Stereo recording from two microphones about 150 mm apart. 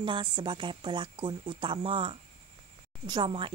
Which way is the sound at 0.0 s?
35° right (ahead or behind).